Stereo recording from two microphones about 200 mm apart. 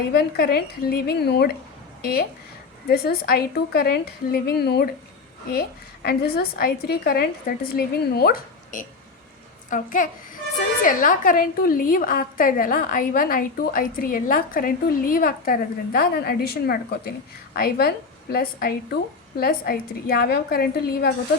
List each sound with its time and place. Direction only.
0.1 s a woman's voice: 50° left (ahead or behind)
2.8 s a woman's voice: 50° left (ahead or behind)